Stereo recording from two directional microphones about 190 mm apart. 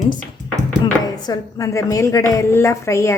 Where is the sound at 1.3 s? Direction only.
20° left (ahead or behind).